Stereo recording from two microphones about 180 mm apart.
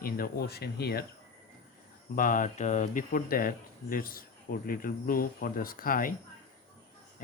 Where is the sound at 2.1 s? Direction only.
50° left (ahead or behind).